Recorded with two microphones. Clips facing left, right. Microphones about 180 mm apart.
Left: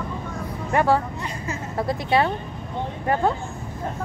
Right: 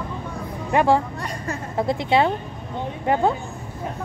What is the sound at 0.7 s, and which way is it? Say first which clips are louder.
A woman's voice: right 2 dB; 15° right (ahead or behind).